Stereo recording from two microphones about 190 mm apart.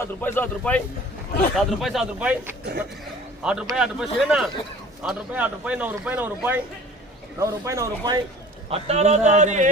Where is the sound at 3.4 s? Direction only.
5° right (ahead or behind).